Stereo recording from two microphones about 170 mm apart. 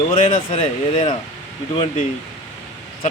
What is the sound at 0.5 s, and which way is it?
Speech, 35° left (ahead or behind).